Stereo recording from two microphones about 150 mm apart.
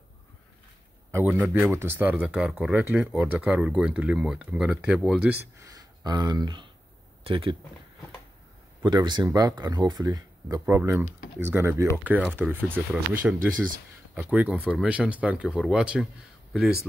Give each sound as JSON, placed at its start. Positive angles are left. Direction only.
{"t": 1.1, "sound": "a man's voice", "side_deg": -10}
{"t": 8.8, "sound": "speech", "side_deg": -30}
{"t": 10.6, "sound": "speech", "side_deg": -10}